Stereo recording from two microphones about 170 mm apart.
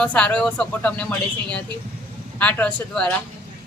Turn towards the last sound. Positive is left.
turn(degrees=5)  # may be behind; listen again after turning